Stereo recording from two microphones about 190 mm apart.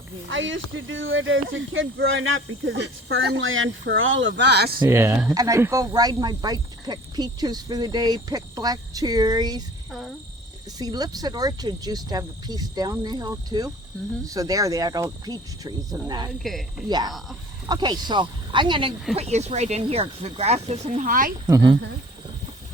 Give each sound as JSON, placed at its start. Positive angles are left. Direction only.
{"t": 0.3, "sound": "speech", "side_deg": -80}
{"t": 4.8, "sound": "speech", "side_deg": -15}
{"t": 10.8, "sound": "speech", "side_deg": -20}
{"t": 16.4, "sound": "speech", "side_deg": 0}
{"t": 17.7, "sound": "speech", "side_deg": -20}
{"t": 21.4, "sound": "speech", "side_deg": -20}